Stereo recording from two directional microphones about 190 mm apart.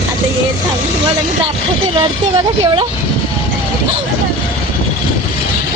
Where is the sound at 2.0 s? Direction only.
25° right (ahead or behind).